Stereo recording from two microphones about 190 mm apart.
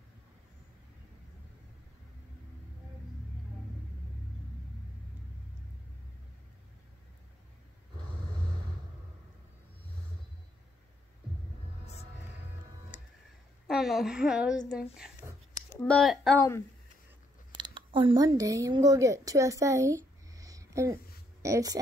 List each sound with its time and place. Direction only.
11.8 s music: 35° left (ahead or behind)
13.7 s a woman's voice: centre (ahead or behind)
15.7 s a sound: 10° left (ahead or behind)
16.0 s a woman's voice: centre (ahead or behind)
16.3 s speech: 15° left (ahead or behind)
17.6 s speech: 25° right (ahead or behind)